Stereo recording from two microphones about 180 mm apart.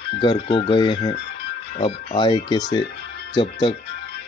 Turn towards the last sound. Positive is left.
turn(degrees=25)  # may be behind; listen again after turning